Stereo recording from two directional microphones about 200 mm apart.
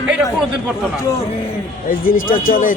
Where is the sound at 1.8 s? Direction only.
45° left (ahead or behind).